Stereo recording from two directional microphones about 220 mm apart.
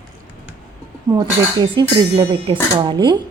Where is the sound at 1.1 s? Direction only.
15° right (ahead or behind).